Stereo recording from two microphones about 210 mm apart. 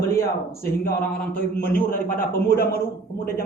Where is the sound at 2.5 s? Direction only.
45° left (ahead or behind).